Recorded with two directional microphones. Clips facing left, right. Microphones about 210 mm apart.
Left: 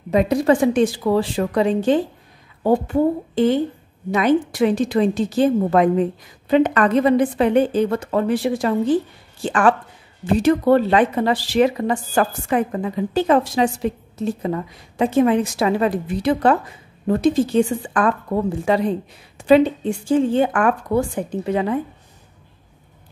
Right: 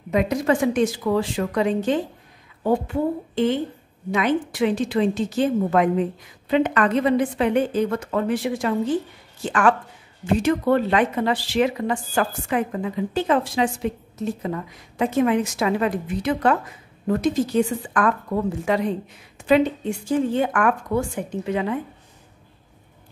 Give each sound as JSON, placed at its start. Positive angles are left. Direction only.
{"t": 0.1, "sound": "speech", "side_deg": 35}